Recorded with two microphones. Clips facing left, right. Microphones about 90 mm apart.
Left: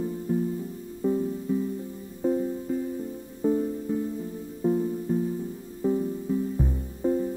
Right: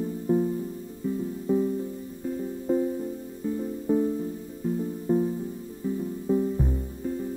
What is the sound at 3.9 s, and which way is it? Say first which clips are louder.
Music: right 8 dB; 20° right (ahead or behind).